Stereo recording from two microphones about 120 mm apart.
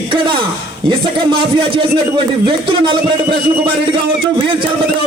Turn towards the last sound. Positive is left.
turn(degrees=-45)  # may be behind; listen again after turning